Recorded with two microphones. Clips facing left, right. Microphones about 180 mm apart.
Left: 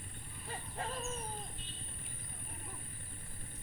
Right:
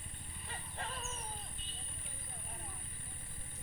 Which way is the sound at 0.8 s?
40° left (ahead or behind).